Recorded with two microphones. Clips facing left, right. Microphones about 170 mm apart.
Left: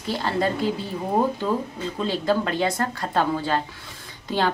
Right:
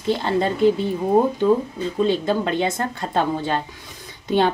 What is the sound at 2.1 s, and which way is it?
Speech, 20° right (ahead or behind).